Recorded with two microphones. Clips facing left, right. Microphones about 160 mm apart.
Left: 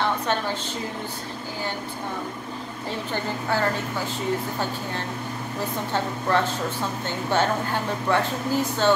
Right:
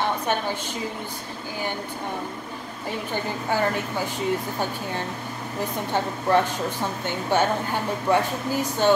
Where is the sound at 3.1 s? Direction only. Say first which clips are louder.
Even; 15° right (ahead or behind).